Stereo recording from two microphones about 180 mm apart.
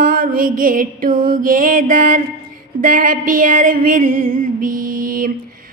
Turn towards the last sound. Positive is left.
turn(degrees=-50)  # may be behind; listen again after turning